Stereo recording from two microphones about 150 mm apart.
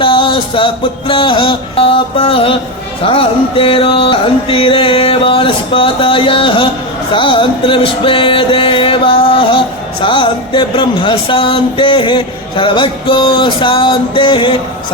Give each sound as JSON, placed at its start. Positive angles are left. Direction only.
{"t": 0.0, "sound": "music", "side_deg": 35}